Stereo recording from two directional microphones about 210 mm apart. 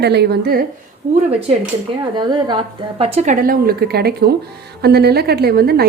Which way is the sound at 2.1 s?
20° right (ahead or behind).